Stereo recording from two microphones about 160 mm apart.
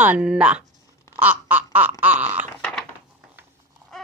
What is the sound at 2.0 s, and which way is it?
Speech, 10° right (ahead or behind).